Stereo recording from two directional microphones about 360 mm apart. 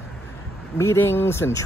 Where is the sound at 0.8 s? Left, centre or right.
Centre.